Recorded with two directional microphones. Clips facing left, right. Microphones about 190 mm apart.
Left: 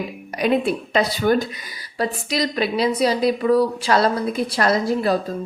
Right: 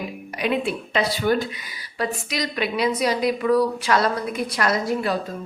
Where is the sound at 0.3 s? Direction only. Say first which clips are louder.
Left 4 dB; 40° left (ahead or behind).